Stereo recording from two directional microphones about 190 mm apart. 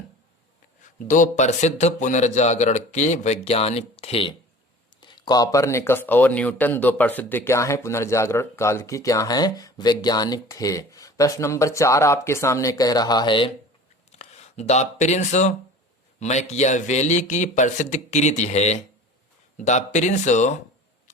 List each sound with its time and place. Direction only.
0.8 s a man's voice: 40° left (ahead or behind)